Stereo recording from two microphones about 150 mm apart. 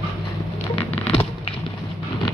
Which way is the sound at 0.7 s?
40° left (ahead or behind).